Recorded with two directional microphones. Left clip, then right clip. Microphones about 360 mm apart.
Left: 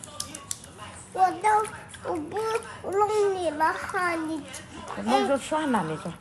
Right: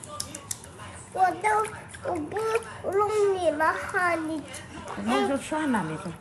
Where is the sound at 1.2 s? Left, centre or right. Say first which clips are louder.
Left 1 dB; centre.